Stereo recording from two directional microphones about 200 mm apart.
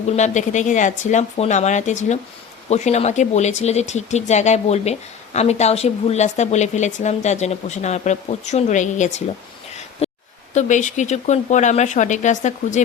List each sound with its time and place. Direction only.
0.2 s speech: 35° left (ahead or behind)
10.0 s a sound: 30° left (ahead or behind)
10.5 s speech: 35° left (ahead or behind)